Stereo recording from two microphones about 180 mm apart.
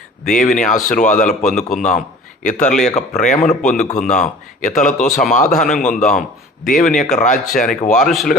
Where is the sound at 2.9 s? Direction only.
45° left (ahead or behind).